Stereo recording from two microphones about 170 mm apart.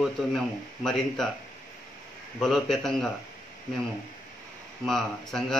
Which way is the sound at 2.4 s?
Centre (ahead or behind).